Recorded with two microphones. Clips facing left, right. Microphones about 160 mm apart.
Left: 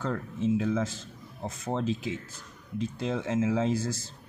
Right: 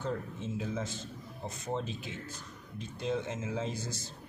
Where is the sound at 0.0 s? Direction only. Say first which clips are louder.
Left 6 dB; 90° left.